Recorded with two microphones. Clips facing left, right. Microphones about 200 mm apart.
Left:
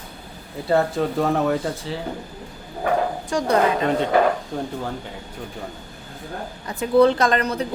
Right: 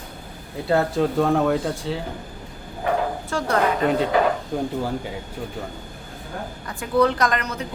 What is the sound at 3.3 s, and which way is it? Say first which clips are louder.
Speech: left 3 dB; 15° left (ahead or behind).